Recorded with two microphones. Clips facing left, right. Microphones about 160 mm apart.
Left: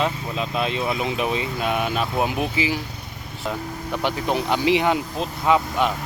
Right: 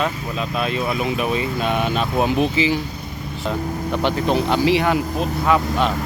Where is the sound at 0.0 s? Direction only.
20° left (ahead or behind); by 3.6 s 5° left (ahead or behind).